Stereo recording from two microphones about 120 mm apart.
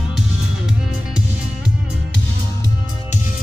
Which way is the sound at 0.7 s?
5° right (ahead or behind).